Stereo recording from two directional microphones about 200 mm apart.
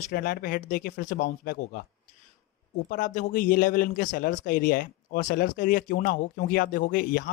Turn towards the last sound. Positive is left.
turn(degrees=45)  # may be behind; listen again after turning